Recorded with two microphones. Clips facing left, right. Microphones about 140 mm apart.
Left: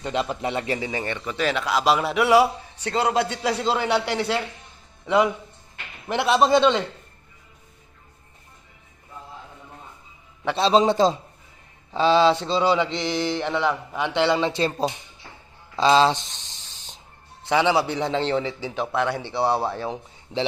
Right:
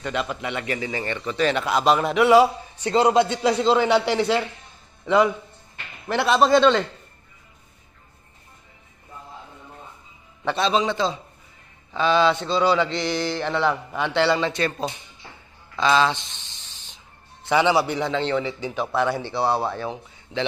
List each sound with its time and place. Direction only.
0.0 s speech: 25° left (ahead or behind)
0.9 s a man's voice: 15° left (ahead or behind)
10.5 s a man's voice: 30° left (ahead or behind)
11.9 s speech: 30° left (ahead or behind)
16.1 s a sound: 40° left (ahead or behind)
17.9 s speech: 30° left (ahead or behind)
18.9 s speech: 30° right (ahead or behind)
19.2 s speech: 25° left (ahead or behind)